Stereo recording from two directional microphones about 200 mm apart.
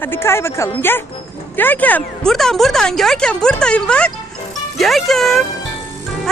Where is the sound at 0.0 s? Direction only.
10° left (ahead or behind).